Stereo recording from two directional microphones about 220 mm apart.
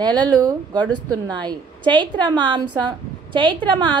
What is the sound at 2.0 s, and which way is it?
A woman's voice, 20° right (ahead or behind).